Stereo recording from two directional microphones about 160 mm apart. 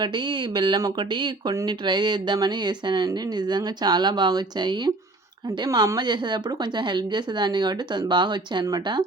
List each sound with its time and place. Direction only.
0.0 s speech: 30° right (ahead or behind)